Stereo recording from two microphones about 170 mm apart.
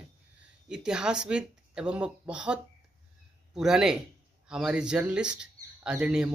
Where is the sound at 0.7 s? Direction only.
5° right (ahead or behind).